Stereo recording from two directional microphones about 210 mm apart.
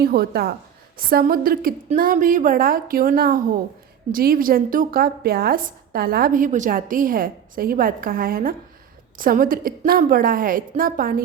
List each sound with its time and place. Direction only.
0.0 s a woman's voice: 50° right (ahead or behind)